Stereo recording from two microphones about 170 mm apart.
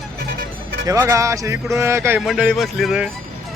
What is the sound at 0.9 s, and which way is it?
Speech, 15° right (ahead or behind).